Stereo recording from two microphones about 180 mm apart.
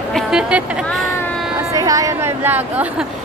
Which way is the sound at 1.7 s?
20° right (ahead or behind).